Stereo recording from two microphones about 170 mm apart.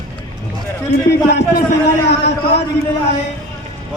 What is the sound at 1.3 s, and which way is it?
Speech, 70° left (ahead or behind).